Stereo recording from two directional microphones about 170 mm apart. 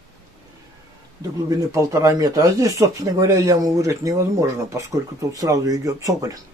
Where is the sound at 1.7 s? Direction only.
20° right (ahead or behind).